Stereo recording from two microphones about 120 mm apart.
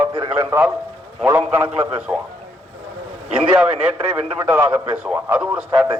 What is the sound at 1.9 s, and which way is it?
Speech, 10° right (ahead or behind).